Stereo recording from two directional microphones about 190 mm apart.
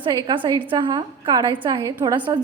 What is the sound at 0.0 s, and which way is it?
A woman's voice, 20° right (ahead or behind).